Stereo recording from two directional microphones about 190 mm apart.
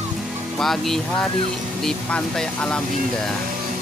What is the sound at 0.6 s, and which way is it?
Speech, centre (ahead or behind).